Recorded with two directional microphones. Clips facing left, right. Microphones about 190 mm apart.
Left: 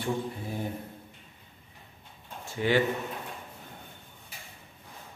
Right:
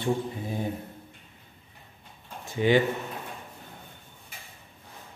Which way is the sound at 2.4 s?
20° right (ahead or behind).